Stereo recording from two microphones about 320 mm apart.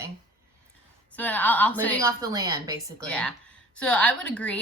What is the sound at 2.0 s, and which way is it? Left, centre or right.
A woman's voice, centre.